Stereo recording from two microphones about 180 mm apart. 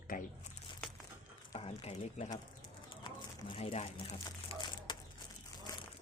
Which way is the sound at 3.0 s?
30° left (ahead or behind).